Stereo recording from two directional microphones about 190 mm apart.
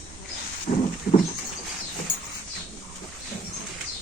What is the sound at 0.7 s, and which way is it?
Horse, 50° left (ahead or behind).